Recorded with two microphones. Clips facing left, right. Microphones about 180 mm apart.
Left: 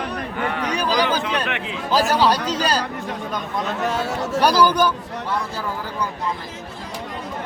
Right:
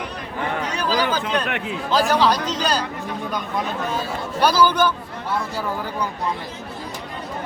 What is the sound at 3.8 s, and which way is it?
Speech, 75° left (ahead or behind).